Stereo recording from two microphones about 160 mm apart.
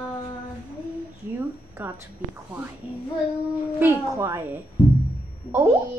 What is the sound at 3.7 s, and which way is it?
A child's voice, 15° right (ahead or behind).